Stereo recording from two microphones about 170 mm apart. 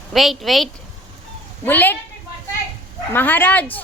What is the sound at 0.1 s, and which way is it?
Speech, centre (ahead or behind).